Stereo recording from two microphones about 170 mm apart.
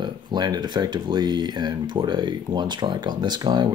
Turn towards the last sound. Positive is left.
turn(degrees=-25)  # may be behind; listen again after turning